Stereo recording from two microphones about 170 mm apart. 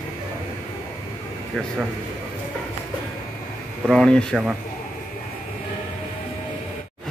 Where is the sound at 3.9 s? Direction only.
5° left (ahead or behind).